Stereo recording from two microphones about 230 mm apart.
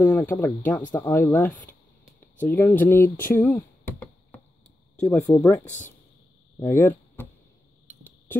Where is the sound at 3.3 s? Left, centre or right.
Centre.